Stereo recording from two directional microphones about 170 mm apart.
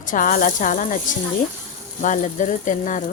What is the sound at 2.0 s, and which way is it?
Speech, 50° left (ahead or behind).